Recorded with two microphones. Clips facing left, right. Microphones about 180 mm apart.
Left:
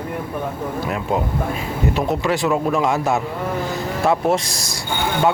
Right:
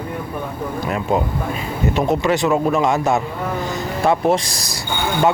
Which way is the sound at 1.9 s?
Centre (ahead or behind).